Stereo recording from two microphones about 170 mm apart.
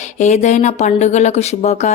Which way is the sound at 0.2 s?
40° left (ahead or behind).